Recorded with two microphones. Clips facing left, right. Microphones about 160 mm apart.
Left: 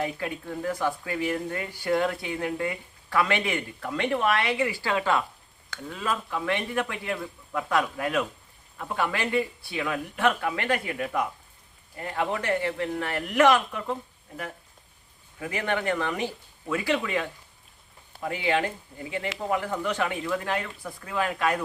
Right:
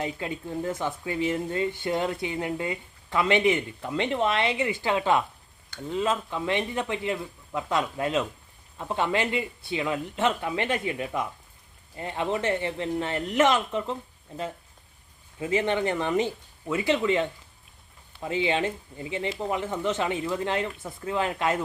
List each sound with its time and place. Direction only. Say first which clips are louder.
0.0 s speech: left 1 dB; 20° right (ahead or behind)
15.4 s speech: right 4 dB; 20° right (ahead or behind)
18.3 s speech: right 1 dB; 20° right (ahead or behind)